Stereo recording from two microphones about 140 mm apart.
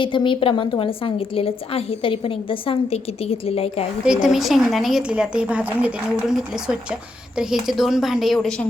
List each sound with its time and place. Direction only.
0.0 s a woman's voice: 35° left (ahead or behind)
4.0 s a woman's voice: 5° right (ahead or behind)